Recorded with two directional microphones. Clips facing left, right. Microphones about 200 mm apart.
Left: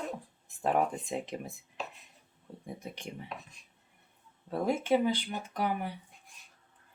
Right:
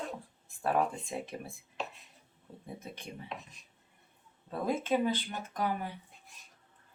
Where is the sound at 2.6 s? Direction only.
15° left (ahead or behind).